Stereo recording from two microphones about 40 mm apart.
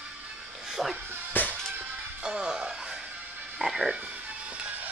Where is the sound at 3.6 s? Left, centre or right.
Centre.